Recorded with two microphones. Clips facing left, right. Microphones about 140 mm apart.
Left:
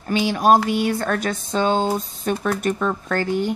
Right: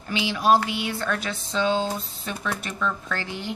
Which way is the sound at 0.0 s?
45° left (ahead or behind).